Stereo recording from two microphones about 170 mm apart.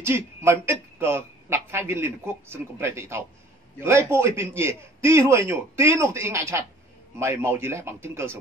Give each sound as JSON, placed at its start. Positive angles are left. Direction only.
{"t": 0.0, "sound": "a man's voice", "side_deg": -15}